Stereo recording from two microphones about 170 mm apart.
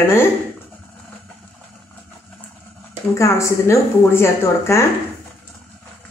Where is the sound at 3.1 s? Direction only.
15° left (ahead or behind).